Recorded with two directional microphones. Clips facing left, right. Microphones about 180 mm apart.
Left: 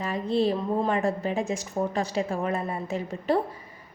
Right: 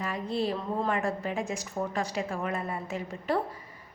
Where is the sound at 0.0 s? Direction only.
25° left (ahead or behind).